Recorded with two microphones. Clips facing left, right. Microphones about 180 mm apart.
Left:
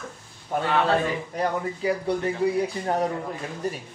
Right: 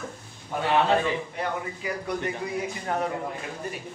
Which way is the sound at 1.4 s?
30° left (ahead or behind).